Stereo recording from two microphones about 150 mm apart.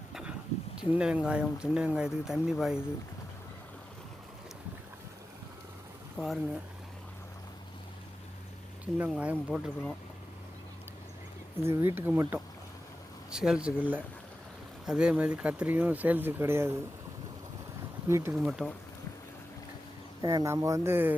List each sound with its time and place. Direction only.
0.1 s a sound: 5° right (ahead or behind)
0.8 s speech: 5° right (ahead or behind)
6.1 s speech: centre (ahead or behind)
9.0 s speech: 10° right (ahead or behind)
11.6 s speech: 15° right (ahead or behind)
18.1 s speech: 20° right (ahead or behind)
18.3 s speech: 5° right (ahead or behind)
20.2 s speech: 25° right (ahead or behind)